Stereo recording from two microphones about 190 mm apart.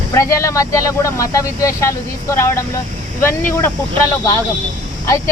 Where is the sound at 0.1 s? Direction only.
15° left (ahead or behind).